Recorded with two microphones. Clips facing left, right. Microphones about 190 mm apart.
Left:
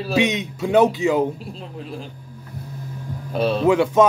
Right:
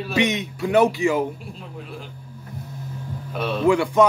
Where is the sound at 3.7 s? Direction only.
20° left (ahead or behind).